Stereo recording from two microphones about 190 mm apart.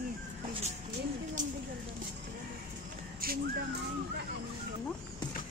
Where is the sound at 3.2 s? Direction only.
50° right (ahead or behind).